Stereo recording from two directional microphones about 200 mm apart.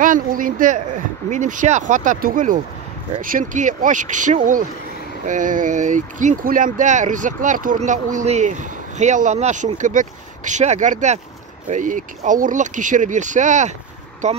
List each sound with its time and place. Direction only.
0.0 s speech: 40° right (ahead or behind)